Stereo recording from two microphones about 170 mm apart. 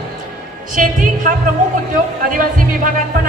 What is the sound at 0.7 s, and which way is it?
A woman's voice, 50° right (ahead or behind).